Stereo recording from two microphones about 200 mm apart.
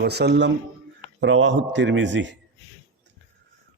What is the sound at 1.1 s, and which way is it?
A man's voice, 70° right (ahead or behind).